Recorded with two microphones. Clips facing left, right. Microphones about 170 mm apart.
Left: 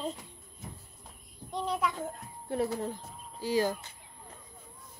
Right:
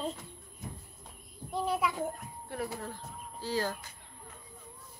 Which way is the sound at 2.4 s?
25° left (ahead or behind).